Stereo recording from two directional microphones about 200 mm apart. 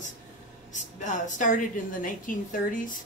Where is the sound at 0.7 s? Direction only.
40° left (ahead or behind).